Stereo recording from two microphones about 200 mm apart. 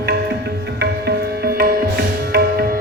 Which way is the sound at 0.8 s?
55° right (ahead or behind).